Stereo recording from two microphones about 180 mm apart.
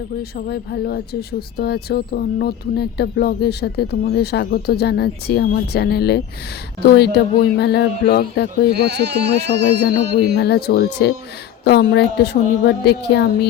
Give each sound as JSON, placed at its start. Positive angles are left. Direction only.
{"t": 0.2, "sound": "speech", "side_deg": 60}
{"t": 8.7, "sound": "speech", "side_deg": -65}
{"t": 10.4, "sound": "a woman's voice", "side_deg": 65}